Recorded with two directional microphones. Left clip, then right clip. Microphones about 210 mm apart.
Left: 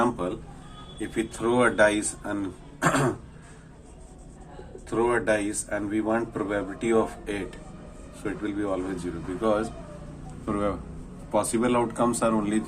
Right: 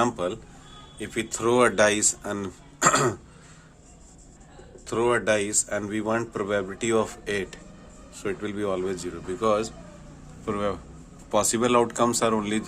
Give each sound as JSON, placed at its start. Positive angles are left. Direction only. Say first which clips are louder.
{"t": 0.0, "sound": "a sound", "louder": "right 1 dB", "side_deg": -60}
{"t": 0.9, "sound": "speech", "louder": "even", "side_deg": -60}
{"t": 4.9, "sound": "speech", "louder": "right 1 dB", "side_deg": -60}
{"t": 10.4, "sound": "speech", "louder": "even", "side_deg": -40}
{"t": 11.3, "sound": "speech", "louder": "right 2 dB", "side_deg": -55}